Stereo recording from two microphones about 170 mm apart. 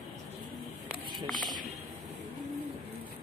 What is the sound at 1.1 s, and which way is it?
Run, centre (ahead or behind).